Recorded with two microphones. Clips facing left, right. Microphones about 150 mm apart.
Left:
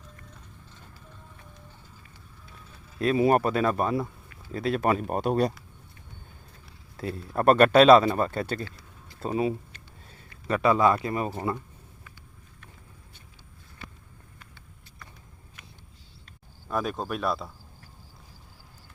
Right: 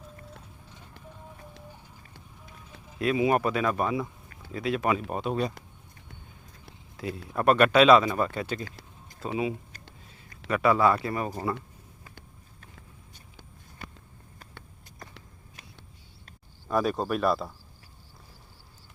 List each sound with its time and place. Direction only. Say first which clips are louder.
0.4 s clip-clop: right 1 dB; 15° right (ahead or behind)
3.0 s speech: left 2 dB; 40° left (ahead or behind)
3.8 s speech: left 2 dB; centre (ahead or behind)
4.5 s speech: left 2 dB; 40° left (ahead or behind)
6.9 s speech: left 2 dB; 35° left (ahead or behind)
10.5 s speech: left 1 dB; 25° left (ahead or behind)
16.6 s speech: right 3 dB; centre (ahead or behind)